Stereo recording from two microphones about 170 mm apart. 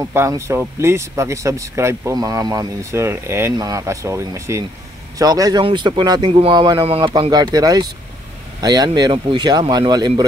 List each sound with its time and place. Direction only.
0.0 s speech: 15° right (ahead or behind)